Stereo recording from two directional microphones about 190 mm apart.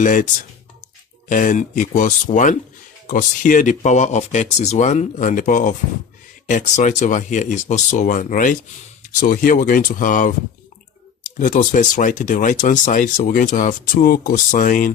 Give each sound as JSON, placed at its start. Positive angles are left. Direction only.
{"t": 0.0, "sound": "speech", "side_deg": 40}
{"t": 1.3, "sound": "speech", "side_deg": 40}